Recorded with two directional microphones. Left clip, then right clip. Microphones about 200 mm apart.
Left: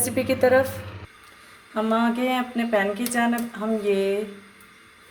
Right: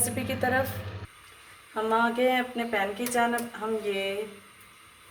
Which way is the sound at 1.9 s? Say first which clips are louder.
Even; 45° left (ahead or behind).